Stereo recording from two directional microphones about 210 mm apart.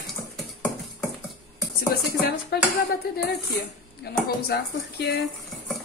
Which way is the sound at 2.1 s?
50° left (ahead or behind).